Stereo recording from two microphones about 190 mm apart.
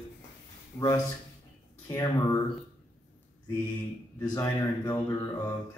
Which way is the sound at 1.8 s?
20° left (ahead or behind).